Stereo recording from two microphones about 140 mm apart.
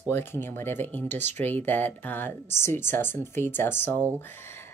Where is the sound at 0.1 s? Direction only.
15° left (ahead or behind).